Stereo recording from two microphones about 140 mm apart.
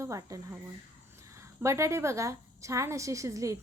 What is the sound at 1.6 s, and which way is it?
A woman's voice, 20° right (ahead or behind).